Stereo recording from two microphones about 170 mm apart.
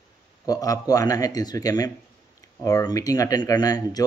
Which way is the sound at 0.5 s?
20° left (ahead or behind).